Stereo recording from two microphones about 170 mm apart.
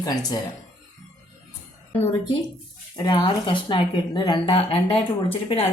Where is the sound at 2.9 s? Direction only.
25° left (ahead or behind).